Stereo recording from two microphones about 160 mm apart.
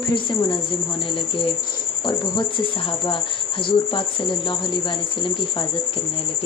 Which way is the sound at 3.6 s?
30° left (ahead or behind).